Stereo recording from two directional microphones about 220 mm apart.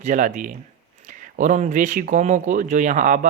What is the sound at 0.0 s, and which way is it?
Speech, 35° right (ahead or behind).